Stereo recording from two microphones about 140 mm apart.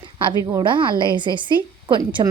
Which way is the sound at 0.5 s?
35° right (ahead or behind).